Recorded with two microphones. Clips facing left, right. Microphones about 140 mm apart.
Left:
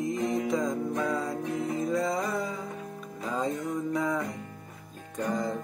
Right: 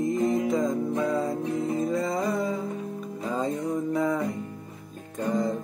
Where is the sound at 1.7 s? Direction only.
25° right (ahead or behind).